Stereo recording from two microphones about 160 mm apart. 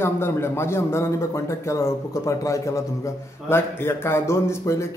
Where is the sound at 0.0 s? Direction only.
15° left (ahead or behind).